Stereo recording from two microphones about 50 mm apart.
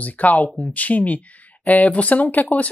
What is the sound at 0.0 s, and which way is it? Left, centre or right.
Speech, left.